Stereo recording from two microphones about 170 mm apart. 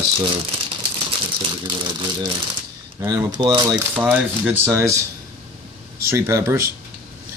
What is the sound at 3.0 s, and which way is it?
Speech, 15° right (ahead or behind).